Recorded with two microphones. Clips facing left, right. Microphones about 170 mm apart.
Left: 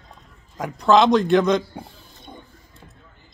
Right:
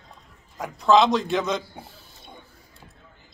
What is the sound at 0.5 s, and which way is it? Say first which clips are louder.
A man's voice: left 2 dB; centre (ahead or behind).